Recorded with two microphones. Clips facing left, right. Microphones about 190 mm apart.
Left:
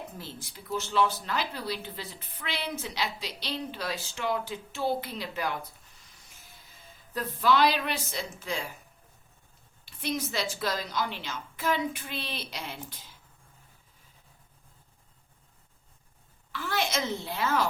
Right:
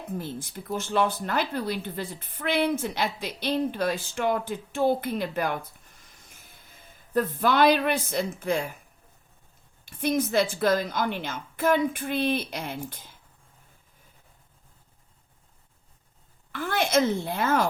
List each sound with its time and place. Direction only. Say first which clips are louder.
0.2 s speech: right 8 dB; 50° right (ahead or behind)
6.0 s a sound: right 3 dB; 55° right (ahead or behind)
9.8 s speech: right 7 dB; 50° right (ahead or behind)
16.5 s a woman's voice: right 5 dB; 50° right (ahead or behind)